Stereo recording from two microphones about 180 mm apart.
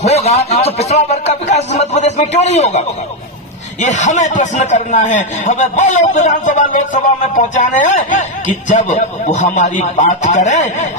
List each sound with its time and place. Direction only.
0.0 s speech: 35° left (ahead or behind)
3.8 s a man's voice: 40° left (ahead or behind)